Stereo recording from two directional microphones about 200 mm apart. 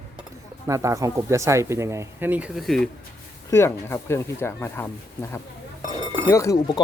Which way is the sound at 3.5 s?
15° left (ahead or behind).